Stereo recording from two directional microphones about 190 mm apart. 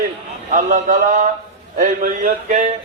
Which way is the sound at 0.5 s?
45° right (ahead or behind).